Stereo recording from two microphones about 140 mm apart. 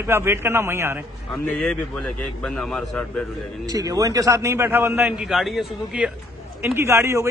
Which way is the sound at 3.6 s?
25° right (ahead or behind).